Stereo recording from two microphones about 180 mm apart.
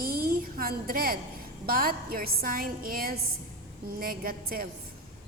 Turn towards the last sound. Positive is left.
turn(degrees=-55)  # may be behind; listen again after turning